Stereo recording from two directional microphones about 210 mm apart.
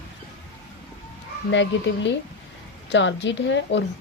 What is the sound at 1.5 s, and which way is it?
A woman's voice, 60° left (ahead or behind).